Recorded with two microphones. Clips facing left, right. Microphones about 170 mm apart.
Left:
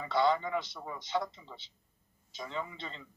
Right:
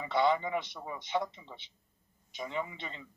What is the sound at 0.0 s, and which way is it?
Speech, 15° right (ahead or behind).